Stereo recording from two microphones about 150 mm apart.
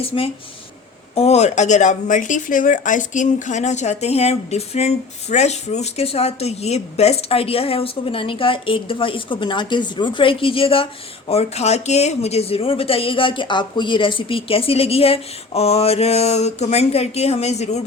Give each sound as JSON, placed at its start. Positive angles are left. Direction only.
{"t": 0.0, "sound": "speech", "side_deg": 40}